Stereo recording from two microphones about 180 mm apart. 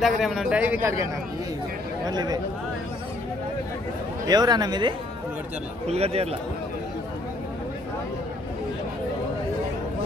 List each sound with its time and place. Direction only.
0.0 s a man's voice: centre (ahead or behind)
2.0 s speech: 20° right (ahead or behind)
4.3 s speech: 20° right (ahead or behind)
5.9 s speech: 35° right (ahead or behind)